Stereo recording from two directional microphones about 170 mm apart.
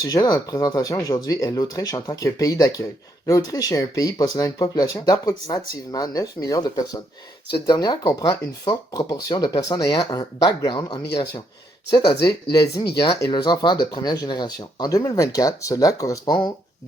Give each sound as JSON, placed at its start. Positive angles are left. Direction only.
{"t": 0.0, "sound": "speech", "side_deg": 25}
{"t": 12.2, "sound": "speech", "side_deg": 25}